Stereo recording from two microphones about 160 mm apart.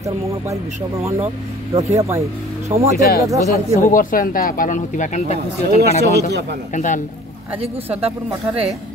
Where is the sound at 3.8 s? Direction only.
60° left (ahead or behind).